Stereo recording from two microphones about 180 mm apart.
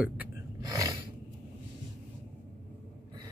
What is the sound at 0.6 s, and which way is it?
Speech, 20° right (ahead or behind).